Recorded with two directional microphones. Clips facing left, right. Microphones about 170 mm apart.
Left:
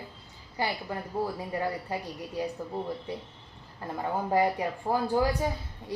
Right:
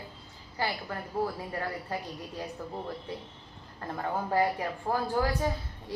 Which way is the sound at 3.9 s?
15° left (ahead or behind).